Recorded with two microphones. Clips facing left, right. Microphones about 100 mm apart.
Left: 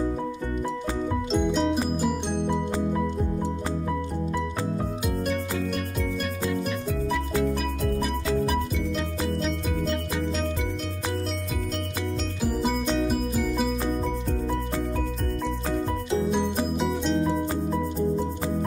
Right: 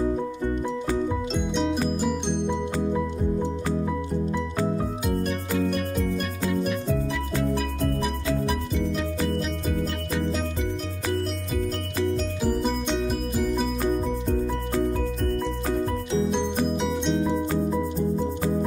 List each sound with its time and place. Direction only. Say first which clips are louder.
1.3 s music: left 5 dB; centre (ahead or behind)
12.4 s music: even; 5° left (ahead or behind)
16.9 s music: even; centre (ahead or behind)